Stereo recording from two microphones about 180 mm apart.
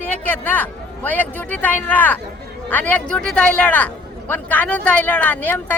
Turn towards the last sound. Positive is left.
turn(degrees=10)  # may be behind; listen again after turning